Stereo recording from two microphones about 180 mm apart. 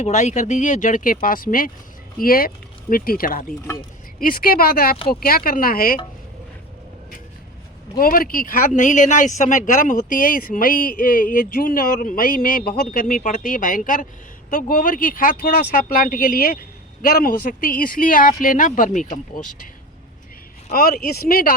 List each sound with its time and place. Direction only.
0.0 s speech: 40° left (ahead or behind)
7.9 s speech: 55° left (ahead or behind)
20.7 s speech: 55° left (ahead or behind)